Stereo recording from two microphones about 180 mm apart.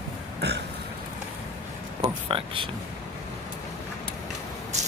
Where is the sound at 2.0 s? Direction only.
30° right (ahead or behind).